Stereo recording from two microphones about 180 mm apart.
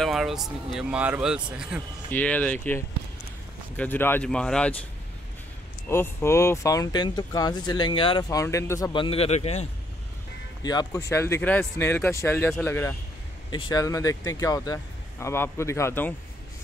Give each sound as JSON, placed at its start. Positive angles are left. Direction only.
{"t": 0.0, "sound": "speech", "side_deg": 0}
{"t": 2.0, "sound": "speech", "side_deg": 10}
{"t": 5.9, "sound": "speech", "side_deg": 15}
{"t": 10.6, "sound": "speech", "side_deg": 20}
{"t": 13.5, "sound": "speech", "side_deg": 25}